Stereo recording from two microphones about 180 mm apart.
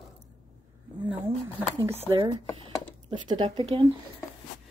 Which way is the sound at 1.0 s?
10° right (ahead or behind).